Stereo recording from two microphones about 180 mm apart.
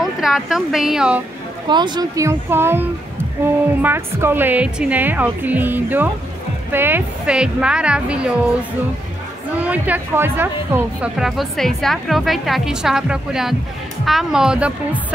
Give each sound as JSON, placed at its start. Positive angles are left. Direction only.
{"t": 0.0, "sound": "speech", "side_deg": 0}
{"t": 1.7, "sound": "a woman's voice", "side_deg": -25}
{"t": 9.7, "sound": "speech", "side_deg": -10}